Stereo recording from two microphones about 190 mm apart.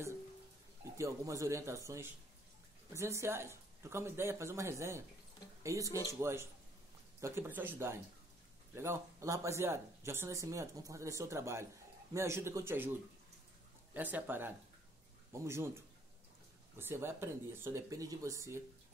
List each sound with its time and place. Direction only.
0.9 s speech: 15° right (ahead or behind)
2.9 s speech: 15° right (ahead or behind)
13.9 s speech: 10° right (ahead or behind)